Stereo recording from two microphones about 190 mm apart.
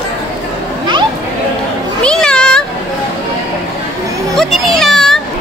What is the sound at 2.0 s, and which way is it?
Speech, 5° left (ahead or behind).